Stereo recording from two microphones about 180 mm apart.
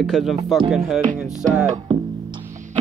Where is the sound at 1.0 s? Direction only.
45° right (ahead or behind).